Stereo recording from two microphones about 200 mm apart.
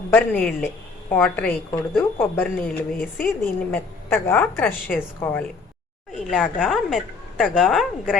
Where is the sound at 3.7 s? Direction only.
10° left (ahead or behind).